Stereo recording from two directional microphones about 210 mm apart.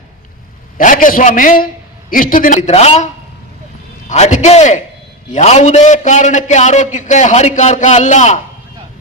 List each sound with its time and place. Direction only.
0.8 s a man's voice: 40° left (ahead or behind)
4.1 s a man's voice: 35° left (ahead or behind)